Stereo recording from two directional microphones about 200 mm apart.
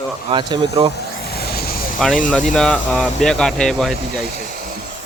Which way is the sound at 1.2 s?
50° left (ahead or behind).